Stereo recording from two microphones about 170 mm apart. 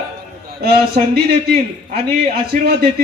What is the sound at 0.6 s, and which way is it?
A man's voice, 70° right (ahead or behind).